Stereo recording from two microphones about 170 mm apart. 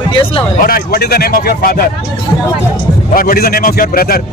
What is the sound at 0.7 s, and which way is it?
A man's voice, 60° left (ahead or behind).